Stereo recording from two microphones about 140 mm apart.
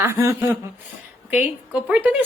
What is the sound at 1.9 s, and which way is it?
Speech, 10° right (ahead or behind).